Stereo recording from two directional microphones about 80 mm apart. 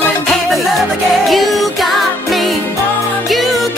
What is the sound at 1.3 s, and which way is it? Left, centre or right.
Music, centre.